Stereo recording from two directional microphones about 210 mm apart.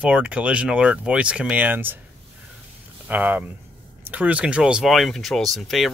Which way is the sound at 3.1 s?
5° right (ahead or behind).